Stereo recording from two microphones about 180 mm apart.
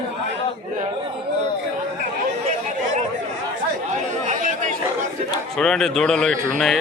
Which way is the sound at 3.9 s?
45° right (ahead or behind).